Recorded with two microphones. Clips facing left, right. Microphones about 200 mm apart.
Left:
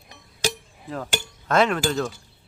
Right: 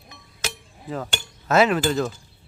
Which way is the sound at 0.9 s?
Centre (ahead or behind).